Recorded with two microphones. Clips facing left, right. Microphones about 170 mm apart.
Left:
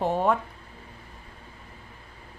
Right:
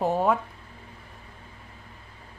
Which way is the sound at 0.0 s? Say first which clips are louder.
Right 1 dB; centre (ahead or behind).